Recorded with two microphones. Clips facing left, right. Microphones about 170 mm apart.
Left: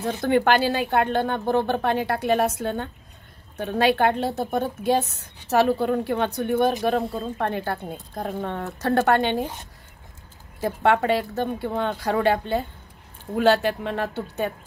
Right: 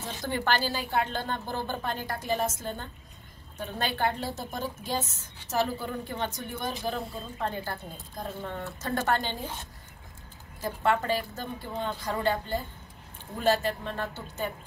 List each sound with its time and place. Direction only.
0.0 s a woman's voice: 60° left (ahead or behind)
10.6 s a woman's voice: 70° left (ahead or behind)